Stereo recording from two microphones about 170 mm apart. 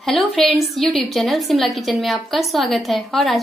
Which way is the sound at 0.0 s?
Centre (ahead or behind).